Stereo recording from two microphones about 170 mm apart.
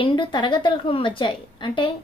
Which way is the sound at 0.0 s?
30° left (ahead or behind).